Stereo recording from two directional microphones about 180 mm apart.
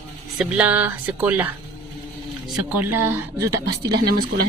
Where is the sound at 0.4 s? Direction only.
5° right (ahead or behind).